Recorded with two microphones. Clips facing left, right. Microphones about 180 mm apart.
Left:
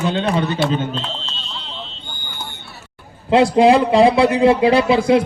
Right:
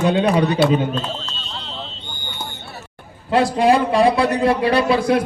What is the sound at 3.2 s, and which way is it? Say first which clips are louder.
Speech: left 4 dB; 25° left (ahead or behind).